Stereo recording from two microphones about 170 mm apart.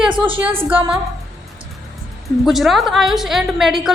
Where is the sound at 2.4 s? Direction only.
Centre (ahead or behind).